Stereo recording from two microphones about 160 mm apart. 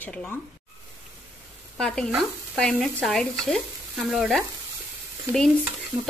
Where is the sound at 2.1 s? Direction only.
Centre (ahead or behind).